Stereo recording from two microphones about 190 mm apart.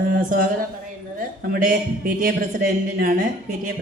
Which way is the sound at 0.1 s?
45° right (ahead or behind).